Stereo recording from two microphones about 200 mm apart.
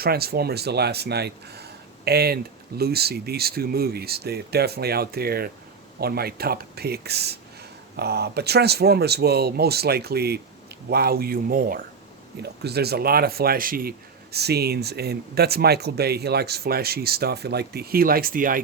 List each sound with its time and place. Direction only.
0.0 s speech: 50° right (ahead or behind)